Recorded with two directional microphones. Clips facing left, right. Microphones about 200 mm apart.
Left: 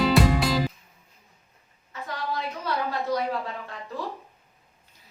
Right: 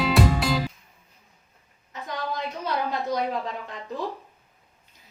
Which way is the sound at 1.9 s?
20° right (ahead or behind).